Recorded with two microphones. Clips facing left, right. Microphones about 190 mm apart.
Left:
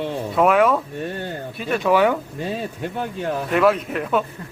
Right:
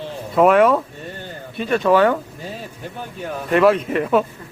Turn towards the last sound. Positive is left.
turn(degrees=0)  # may be behind; listen again after turning